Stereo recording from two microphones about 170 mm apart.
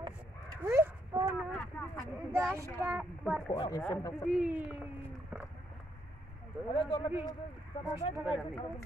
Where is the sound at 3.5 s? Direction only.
25° left (ahead or behind).